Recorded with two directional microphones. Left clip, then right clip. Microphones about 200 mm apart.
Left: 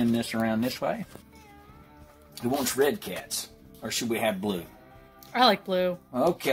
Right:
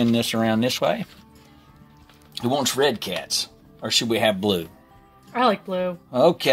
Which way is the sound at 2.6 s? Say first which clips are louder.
Right 3 dB; 40° right (ahead or behind).